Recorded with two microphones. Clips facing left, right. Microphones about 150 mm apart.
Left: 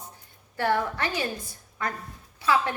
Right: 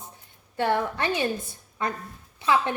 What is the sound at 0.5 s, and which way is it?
A woman's voice, 20° right (ahead or behind).